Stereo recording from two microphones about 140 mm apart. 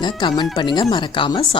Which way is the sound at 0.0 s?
30° left (ahead or behind).